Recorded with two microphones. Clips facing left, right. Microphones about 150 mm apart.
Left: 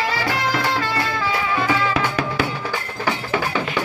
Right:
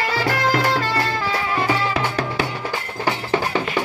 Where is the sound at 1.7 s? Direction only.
30° right (ahead or behind).